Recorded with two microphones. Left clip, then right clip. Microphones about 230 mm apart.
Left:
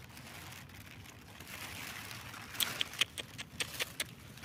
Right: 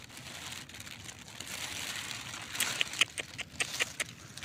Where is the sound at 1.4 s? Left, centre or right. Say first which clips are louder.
Right 6 dB; right.